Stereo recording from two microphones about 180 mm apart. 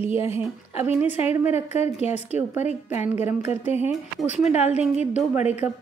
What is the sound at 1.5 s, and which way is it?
Speech, 35° left (ahead or behind).